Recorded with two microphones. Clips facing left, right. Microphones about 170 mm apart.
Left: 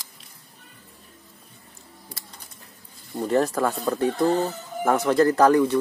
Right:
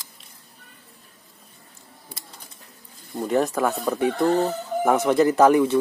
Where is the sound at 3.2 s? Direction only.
Centre (ahead or behind).